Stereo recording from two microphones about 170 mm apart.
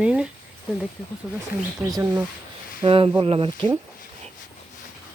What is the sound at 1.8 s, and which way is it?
Speech, 15° right (ahead or behind).